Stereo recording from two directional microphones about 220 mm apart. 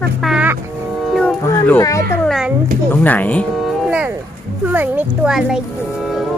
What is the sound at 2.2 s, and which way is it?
Speech, centre (ahead or behind).